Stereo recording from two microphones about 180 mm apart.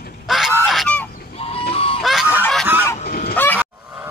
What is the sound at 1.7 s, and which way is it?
Goose, 30° left (ahead or behind).